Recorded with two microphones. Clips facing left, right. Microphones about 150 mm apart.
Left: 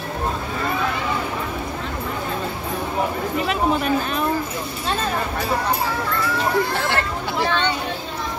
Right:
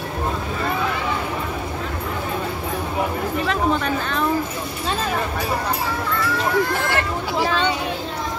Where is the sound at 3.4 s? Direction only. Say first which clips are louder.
Left 1 dB; 15° left (ahead or behind).